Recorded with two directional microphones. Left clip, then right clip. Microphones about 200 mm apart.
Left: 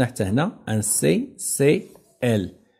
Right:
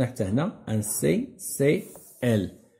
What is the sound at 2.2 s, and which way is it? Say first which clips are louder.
Speech: left 3 dB; 35° left (ahead or behind).